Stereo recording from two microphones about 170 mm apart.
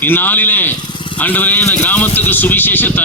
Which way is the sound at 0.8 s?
25° left (ahead or behind).